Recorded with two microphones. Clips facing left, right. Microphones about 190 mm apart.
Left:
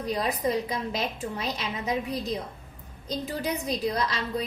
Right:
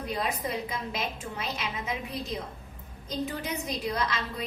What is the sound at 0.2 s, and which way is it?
A woman's voice, 35° left (ahead or behind).